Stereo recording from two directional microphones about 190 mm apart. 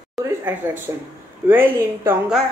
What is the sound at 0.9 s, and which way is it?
Speech, 15° right (ahead or behind).